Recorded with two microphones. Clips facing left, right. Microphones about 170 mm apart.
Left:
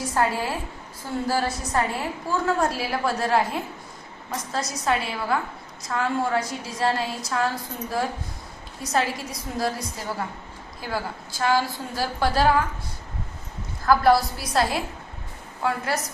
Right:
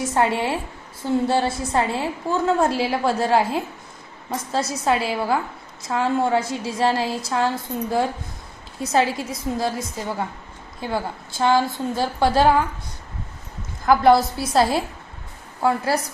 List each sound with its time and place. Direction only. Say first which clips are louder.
0.0 s a woman's voice: right 3 dB; 25° right (ahead or behind)
13.8 s a woman's voice: right 3 dB; 20° right (ahead or behind)